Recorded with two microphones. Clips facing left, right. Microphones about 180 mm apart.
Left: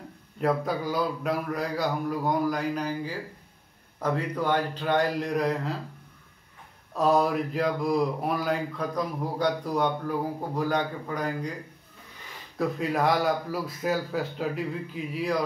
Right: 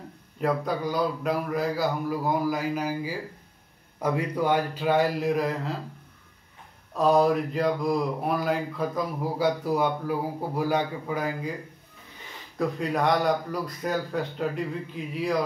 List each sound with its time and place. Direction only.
0.4 s speech: centre (ahead or behind)
6.9 s speech: centre (ahead or behind)
12.5 s speech: centre (ahead or behind)